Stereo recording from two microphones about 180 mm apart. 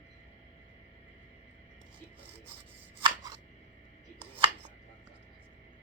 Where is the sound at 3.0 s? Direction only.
20° right (ahead or behind).